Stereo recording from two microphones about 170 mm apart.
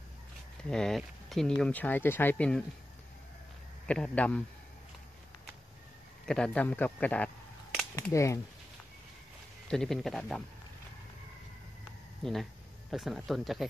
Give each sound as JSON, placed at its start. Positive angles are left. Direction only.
{"t": 0.7, "sound": "speech", "side_deg": 5}
{"t": 3.8, "sound": "speech", "side_deg": 5}
{"t": 6.2, "sound": "speech", "side_deg": 5}
{"t": 9.7, "sound": "speech", "side_deg": 0}
{"t": 12.2, "sound": "speech", "side_deg": 0}